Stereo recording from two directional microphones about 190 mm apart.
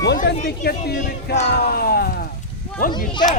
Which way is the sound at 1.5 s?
55° left (ahead or behind).